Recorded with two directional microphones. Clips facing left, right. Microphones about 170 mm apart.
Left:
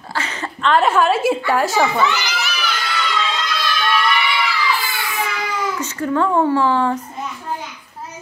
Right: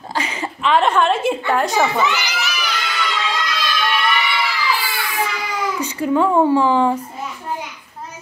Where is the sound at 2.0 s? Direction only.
15° right (ahead or behind).